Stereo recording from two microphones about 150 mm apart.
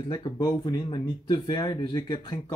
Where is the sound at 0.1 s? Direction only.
25° left (ahead or behind).